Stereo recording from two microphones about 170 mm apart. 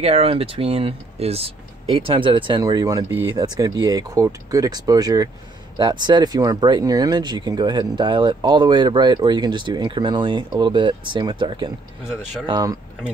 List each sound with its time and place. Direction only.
0.0 s speech: 35° right (ahead or behind)